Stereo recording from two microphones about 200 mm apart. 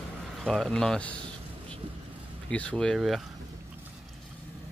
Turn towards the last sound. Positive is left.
turn(degrees=0)  # may be behind; listen again after turning